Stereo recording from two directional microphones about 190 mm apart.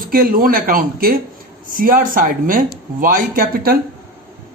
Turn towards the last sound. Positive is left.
turn(degrees=-50)  # may be behind; listen again after turning